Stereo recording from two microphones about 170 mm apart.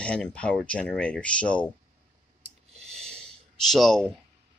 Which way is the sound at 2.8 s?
5° left (ahead or behind).